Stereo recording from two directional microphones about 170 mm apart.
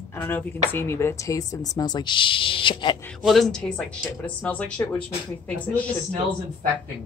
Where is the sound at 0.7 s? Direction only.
15° left (ahead or behind); by 2.9 s 30° left (ahead or behind).